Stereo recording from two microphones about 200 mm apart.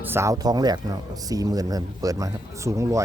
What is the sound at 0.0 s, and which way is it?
Speech, 10° right (ahead or behind).